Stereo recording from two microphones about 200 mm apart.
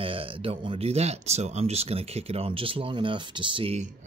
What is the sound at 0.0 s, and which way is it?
Speech, 25° right (ahead or behind).